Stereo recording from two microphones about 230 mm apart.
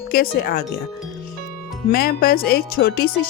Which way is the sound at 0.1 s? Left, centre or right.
Left.